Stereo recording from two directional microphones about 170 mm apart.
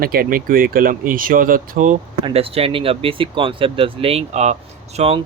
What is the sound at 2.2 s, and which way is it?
Speech, 35° right (ahead or behind).